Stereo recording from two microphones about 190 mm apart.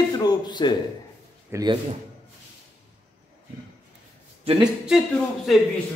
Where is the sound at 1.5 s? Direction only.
20° right (ahead or behind).